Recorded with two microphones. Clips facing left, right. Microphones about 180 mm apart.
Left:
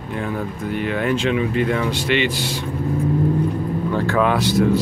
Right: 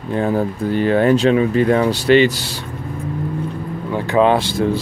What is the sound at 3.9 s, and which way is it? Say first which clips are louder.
Speech: right 5 dB; 20° right (ahead or behind).